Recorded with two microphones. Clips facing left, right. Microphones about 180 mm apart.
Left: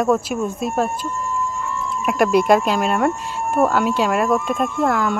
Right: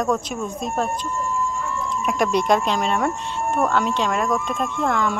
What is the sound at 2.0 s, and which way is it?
Speech, 5° left (ahead or behind).